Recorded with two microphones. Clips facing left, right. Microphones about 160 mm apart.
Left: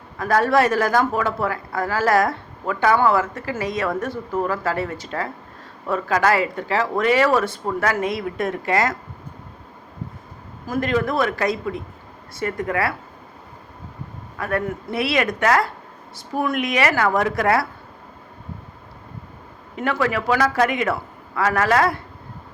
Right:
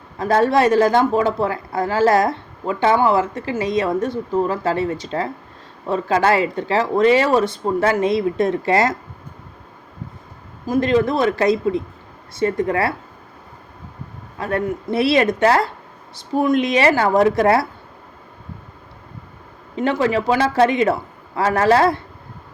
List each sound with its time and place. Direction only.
0.2 s a woman's voice: 25° right (ahead or behind)
10.7 s a woman's voice: 25° right (ahead or behind)
14.3 s a woman's voice: 25° right (ahead or behind)
19.7 s a woman's voice: 25° right (ahead or behind)